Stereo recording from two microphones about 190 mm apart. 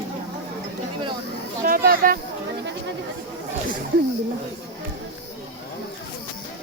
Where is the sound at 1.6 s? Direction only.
50° right (ahead or behind).